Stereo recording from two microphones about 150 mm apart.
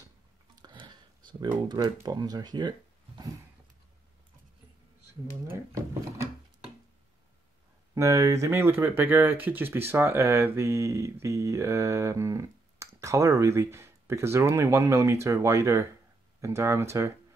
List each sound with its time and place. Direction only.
0.6 s a sound: 30° right (ahead or behind)
1.7 s speech: 25° right (ahead or behind)
5.5 s speech: 20° right (ahead or behind)
7.9 s speech: 20° right (ahead or behind)